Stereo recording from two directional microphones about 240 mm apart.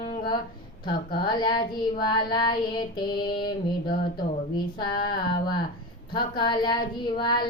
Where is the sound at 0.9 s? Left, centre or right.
Centre.